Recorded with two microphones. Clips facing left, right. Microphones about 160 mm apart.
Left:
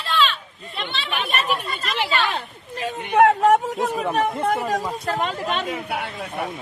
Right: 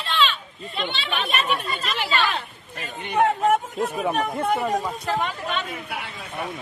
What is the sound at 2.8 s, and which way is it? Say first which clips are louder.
Speech: left 5 dB; 80° left.